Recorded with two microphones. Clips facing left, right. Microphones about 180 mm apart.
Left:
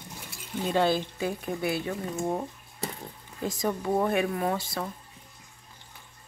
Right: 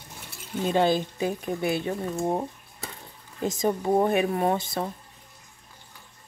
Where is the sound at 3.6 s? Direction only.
25° right (ahead or behind).